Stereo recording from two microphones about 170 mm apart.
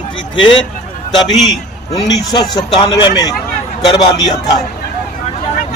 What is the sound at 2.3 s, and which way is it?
A man's voice, 25° left (ahead or behind).